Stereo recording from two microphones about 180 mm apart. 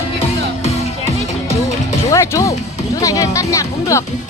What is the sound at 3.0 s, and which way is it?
Speech, 20° left (ahead or behind).